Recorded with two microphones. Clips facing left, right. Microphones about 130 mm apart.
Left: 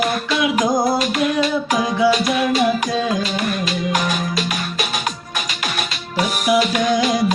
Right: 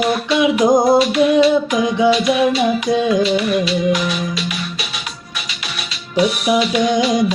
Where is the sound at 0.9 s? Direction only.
45° left (ahead or behind).